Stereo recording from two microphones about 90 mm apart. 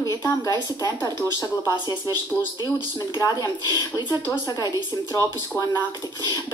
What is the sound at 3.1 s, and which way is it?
Speech, 50° left (ahead or behind).